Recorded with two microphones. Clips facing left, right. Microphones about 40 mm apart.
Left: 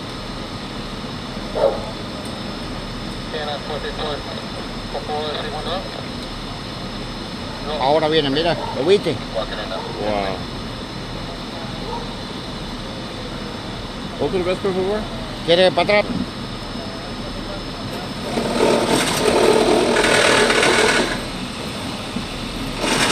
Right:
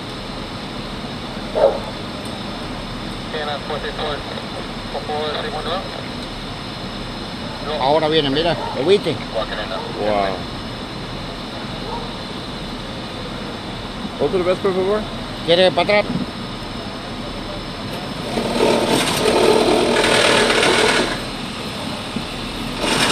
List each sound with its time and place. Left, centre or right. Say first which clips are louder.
1.6 s dog: right 3 dB; centre
3.3 s speech: right 2 dB; centre
7.6 s speech: right 1 dB; centre
14.3 s speech: right 3 dB; centre
14.6 s speech: right 2 dB; centre
18.5 s a sound: even; right
18.9 s wood: right 1 dB; right
19.4 s sewing machine: even; centre
22.8 s vehicle: right 1 dB; centre